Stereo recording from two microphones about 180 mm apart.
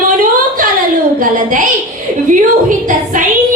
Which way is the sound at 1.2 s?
45° right (ahead or behind).